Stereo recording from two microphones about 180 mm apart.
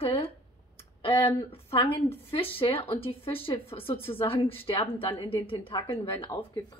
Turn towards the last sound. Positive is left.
turn(degrees=25)  # may be behind; listen again after turning